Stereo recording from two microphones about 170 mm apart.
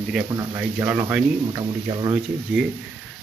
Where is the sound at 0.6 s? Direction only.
10° right (ahead or behind).